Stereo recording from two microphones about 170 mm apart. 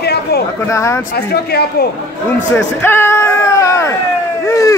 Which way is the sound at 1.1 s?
70° left (ahead or behind).